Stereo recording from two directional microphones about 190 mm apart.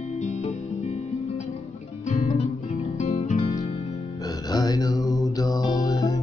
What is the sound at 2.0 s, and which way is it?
Music, 35° left (ahead or behind).